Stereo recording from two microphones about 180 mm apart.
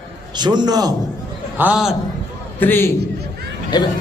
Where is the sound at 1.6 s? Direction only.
5° right (ahead or behind).